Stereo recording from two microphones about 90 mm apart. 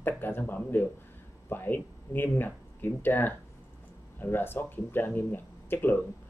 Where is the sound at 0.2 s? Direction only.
20° left (ahead or behind).